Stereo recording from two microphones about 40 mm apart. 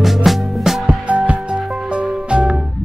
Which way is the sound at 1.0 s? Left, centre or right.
Right.